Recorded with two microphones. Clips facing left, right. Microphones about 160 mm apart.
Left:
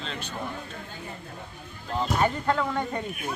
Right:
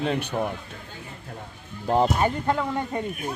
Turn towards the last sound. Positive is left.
turn(degrees=-15)  # may be behind; listen again after turning